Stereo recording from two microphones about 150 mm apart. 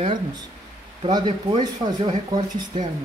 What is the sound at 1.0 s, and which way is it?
Speech, 30° right (ahead or behind).